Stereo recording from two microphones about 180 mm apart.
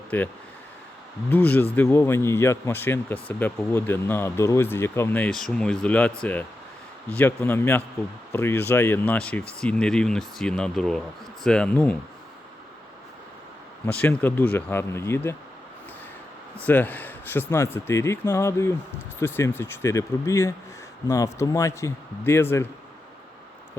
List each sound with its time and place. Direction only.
0.1 s speech: 10° left (ahead or behind)
1.3 s speech: 10° left (ahead or behind)
13.8 s speech: 10° left (ahead or behind)
16.6 s speech: 10° left (ahead or behind)